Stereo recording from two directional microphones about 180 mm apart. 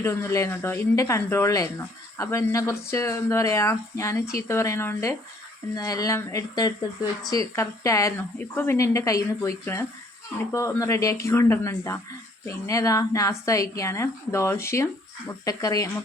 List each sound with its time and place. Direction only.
0.0 s speech: 15° left (ahead or behind)